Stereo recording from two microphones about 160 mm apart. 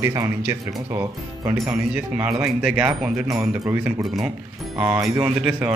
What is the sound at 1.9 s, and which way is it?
A man's voice, 5° right (ahead or behind).